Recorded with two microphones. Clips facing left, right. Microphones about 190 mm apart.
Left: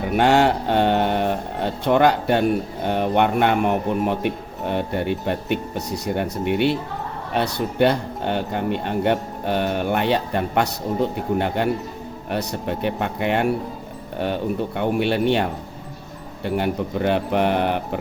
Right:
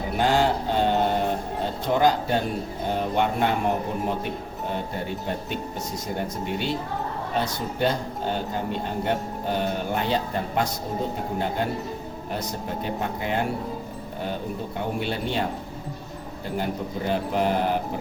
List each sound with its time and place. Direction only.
0.2 s speech: 70° left (ahead or behind)
14.8 s speech: 70° left (ahead or behind)